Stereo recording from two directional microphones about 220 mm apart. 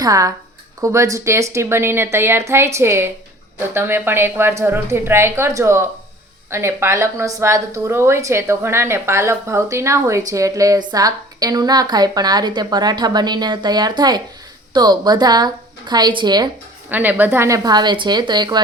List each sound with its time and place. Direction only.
0.0 s a woman's voice: 15° right (ahead or behind)
16.9 s speech: 10° right (ahead or behind)